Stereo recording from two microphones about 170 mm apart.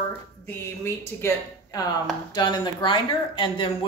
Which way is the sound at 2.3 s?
25° left (ahead or behind).